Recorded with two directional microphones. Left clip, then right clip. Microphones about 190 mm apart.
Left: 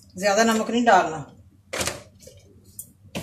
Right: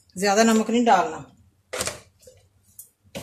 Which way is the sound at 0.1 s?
50° right (ahead or behind).